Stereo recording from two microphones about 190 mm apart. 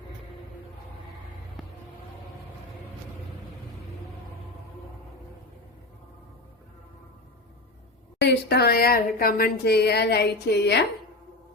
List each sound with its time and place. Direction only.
1.6 s vehicle: centre (ahead or behind)
8.2 s speech: 60° left (ahead or behind)